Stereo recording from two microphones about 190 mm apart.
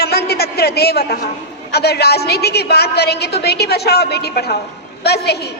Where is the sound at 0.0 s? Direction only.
55° left (ahead or behind).